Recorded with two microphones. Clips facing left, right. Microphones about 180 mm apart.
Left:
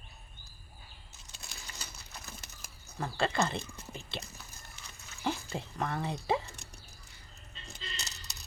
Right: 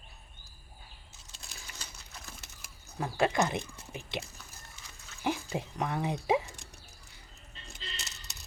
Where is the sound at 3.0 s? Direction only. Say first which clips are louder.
Right 3 dB; 15° right (ahead or behind).